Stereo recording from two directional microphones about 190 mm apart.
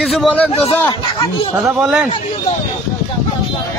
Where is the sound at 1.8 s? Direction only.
5° right (ahead or behind).